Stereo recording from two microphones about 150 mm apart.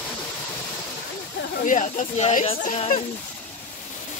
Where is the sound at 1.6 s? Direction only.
55° left (ahead or behind).